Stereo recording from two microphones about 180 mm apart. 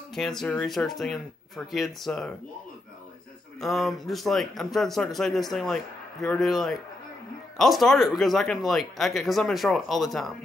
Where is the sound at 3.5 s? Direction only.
Centre (ahead or behind).